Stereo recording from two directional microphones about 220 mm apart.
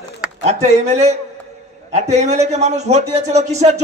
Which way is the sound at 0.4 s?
30° right (ahead or behind).